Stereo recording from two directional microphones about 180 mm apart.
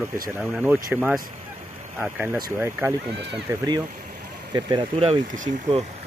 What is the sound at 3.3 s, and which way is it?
Speech, 25° right (ahead or behind).